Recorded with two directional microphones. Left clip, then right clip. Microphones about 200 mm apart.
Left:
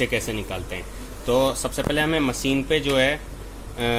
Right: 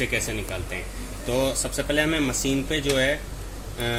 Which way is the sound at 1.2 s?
45° left (ahead or behind).